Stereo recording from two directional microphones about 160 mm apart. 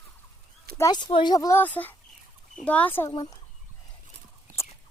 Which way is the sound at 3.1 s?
25° left (ahead or behind).